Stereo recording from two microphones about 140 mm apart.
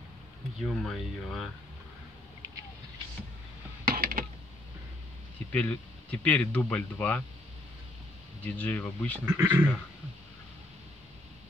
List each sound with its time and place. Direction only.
0.7 s speech: centre (ahead or behind)
3.8 s a sound: 90° right
5.5 s speech: 10° left (ahead or behind)
8.5 s speech: 10° left (ahead or behind)
9.2 s speech: 15° right (ahead or behind)